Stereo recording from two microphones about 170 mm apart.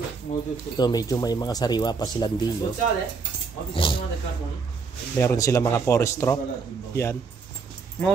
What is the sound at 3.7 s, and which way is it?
Speech, 30° left (ahead or behind).